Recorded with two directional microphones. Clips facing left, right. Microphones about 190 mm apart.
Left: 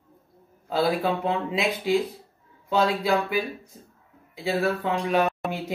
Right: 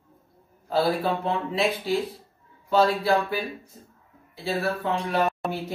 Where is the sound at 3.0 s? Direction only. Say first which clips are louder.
Right 1 dB; 15° left (ahead or behind).